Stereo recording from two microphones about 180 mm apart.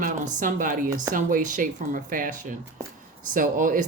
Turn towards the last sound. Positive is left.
turn(degrees=-45)  # may be behind; listen again after turning